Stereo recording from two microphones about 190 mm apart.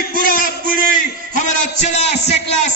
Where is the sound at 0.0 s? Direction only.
50° left (ahead or behind).